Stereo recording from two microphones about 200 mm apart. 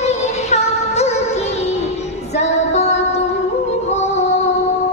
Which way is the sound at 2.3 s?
35° left (ahead or behind).